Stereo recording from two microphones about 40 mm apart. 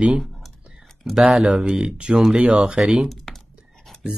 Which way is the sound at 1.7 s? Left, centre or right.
Right.